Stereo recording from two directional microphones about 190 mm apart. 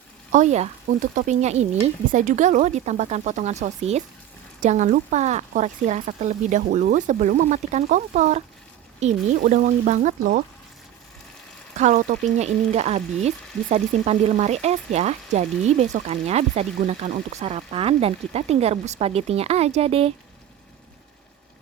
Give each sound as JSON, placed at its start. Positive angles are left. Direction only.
{"t": 0.3, "sound": "speech", "side_deg": -40}
{"t": 11.8, "sound": "speech", "side_deg": -40}